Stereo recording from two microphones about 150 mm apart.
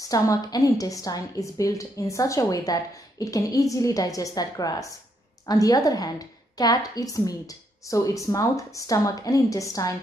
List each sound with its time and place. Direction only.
0.1 s a woman's voice: 25° left (ahead or behind)